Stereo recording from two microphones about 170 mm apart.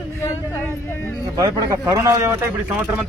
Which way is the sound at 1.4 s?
20° right (ahead or behind).